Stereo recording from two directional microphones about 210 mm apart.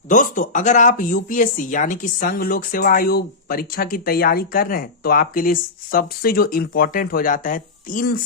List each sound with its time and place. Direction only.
0.1 s speech: 40° left (ahead or behind)